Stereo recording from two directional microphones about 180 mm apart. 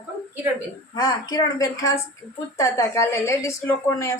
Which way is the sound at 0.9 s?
25° left (ahead or behind).